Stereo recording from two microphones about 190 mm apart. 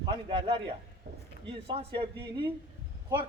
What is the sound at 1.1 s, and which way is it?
Speech, 55° right (ahead or behind).